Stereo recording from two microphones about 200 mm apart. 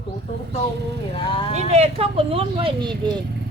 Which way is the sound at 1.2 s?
25° left (ahead or behind).